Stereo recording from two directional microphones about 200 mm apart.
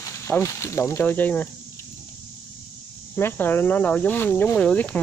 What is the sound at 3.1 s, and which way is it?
Speech, 10° left (ahead or behind).